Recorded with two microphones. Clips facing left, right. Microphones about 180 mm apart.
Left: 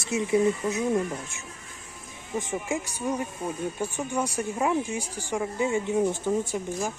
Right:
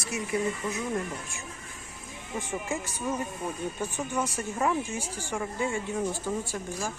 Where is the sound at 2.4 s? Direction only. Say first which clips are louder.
Left 2 dB; 15° left (ahead or behind).